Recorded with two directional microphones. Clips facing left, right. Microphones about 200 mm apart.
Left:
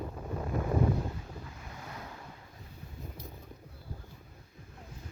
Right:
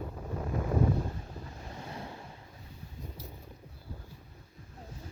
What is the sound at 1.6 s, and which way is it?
Waves, 30° right (ahead or behind).